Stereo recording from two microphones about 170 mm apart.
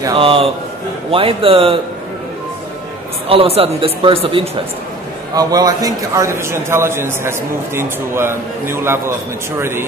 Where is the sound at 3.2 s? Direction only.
35° right (ahead or behind).